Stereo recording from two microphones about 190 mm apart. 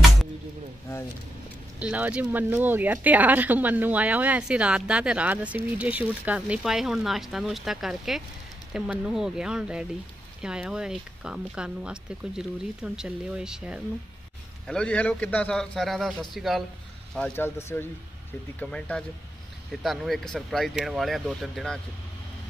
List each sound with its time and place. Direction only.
0.8 s speech: 15° left (ahead or behind)
1.8 s speech: 5° right (ahead or behind)